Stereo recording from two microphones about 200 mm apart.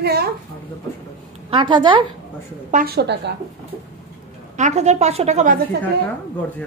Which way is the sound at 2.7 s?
50° right (ahead or behind).